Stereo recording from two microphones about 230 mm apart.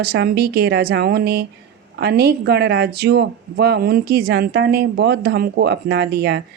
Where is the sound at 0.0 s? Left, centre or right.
Right.